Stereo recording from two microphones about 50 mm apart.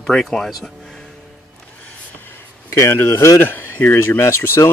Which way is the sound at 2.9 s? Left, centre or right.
Left.